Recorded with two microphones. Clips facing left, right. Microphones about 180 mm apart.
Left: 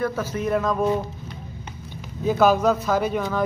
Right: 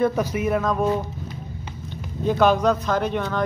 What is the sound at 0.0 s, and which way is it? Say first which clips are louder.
Speech: right 4 dB; 15° right (ahead or behind).